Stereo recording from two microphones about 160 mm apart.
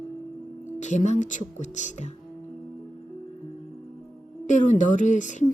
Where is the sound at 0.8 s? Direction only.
50° left (ahead or behind).